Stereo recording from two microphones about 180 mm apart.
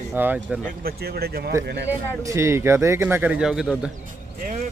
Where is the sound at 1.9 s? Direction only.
15° right (ahead or behind).